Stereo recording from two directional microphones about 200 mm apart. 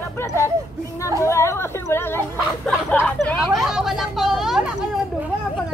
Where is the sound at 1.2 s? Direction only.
15° left (ahead or behind).